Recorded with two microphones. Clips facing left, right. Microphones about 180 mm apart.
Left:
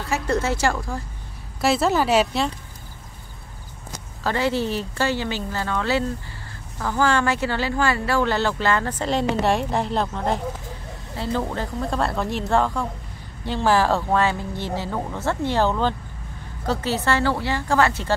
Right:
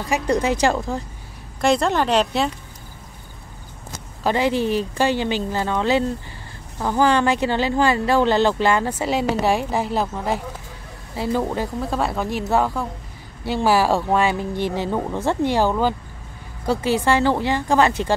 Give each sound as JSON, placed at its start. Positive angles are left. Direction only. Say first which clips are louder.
{"t": 0.0, "sound": "speech", "louder": "right 3 dB", "side_deg": -15}
{"t": 1.6, "sound": "a woman's voice", "louder": "right 1 dB", "side_deg": 5}
{"t": 4.2, "sound": "a woman's voice", "louder": "right 3 dB", "side_deg": -15}